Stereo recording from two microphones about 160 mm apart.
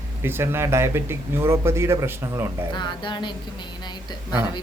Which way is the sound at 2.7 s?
30° left (ahead or behind).